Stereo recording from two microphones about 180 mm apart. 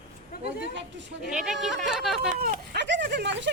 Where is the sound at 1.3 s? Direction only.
5° right (ahead or behind).